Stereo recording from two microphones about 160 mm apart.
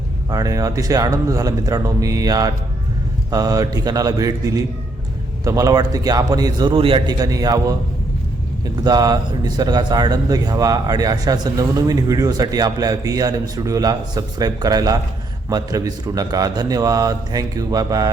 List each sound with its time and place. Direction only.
0.3 s a man's voice: 20° right (ahead or behind)
8.8 s a man's voice: 25° right (ahead or behind)